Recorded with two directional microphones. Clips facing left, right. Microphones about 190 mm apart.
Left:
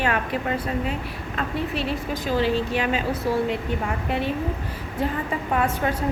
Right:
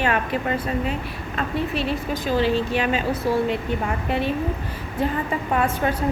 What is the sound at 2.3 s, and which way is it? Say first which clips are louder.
A woman's voice: right 1 dB; 25° right (ahead or behind).